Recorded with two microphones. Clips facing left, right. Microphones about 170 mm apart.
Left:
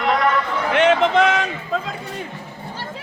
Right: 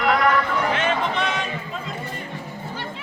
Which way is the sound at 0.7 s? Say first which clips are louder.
Left 8 dB; 80° left.